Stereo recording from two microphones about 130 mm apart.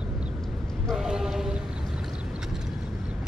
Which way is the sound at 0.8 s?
5° right (ahead or behind).